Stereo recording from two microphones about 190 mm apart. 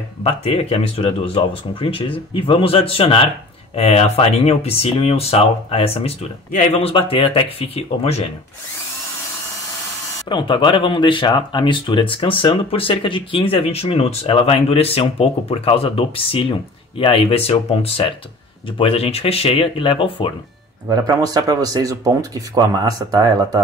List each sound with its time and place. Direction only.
0.2 s speech: 35° left (ahead or behind)
10.2 s speech: 25° left (ahead or behind)
20.9 s speech: 20° right (ahead or behind)